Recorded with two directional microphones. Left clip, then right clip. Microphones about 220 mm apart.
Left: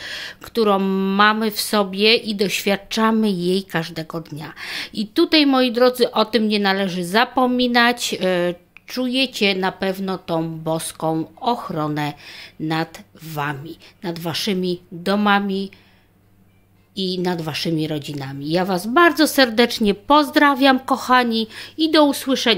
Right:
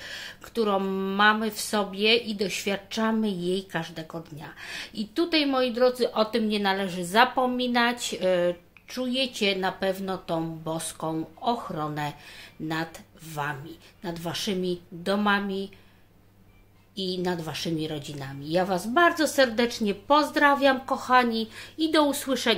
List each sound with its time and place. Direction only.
0.0 s speech: 50° left (ahead or behind)
16.9 s speech: 50° left (ahead or behind)